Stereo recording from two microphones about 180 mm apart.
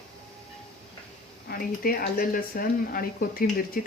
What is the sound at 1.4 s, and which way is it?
Speech, 55° left (ahead or behind).